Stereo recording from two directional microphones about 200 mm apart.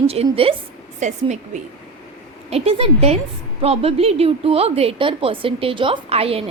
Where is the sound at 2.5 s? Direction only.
30° right (ahead or behind).